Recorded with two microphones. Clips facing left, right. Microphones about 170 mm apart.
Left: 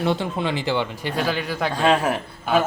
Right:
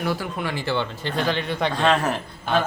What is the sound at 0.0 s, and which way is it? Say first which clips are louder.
Speech: left 4 dB; 25° left (ahead or behind).